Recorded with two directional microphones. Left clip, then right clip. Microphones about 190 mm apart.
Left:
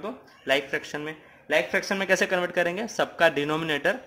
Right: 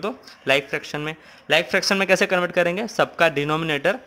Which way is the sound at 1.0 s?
50° right (ahead or behind).